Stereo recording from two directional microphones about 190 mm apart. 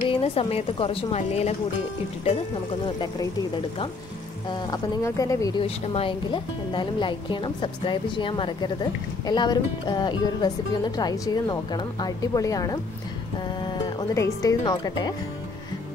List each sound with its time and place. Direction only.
0.1 s a woman's voice: 30° left (ahead or behind)
4.5 s speech: 20° left (ahead or behind)
5.6 s speech: 30° left (ahead or behind)